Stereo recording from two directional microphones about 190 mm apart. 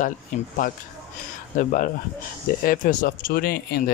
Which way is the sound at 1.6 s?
40° left (ahead or behind).